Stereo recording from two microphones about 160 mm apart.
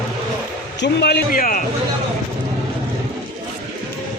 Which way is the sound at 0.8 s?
90° left.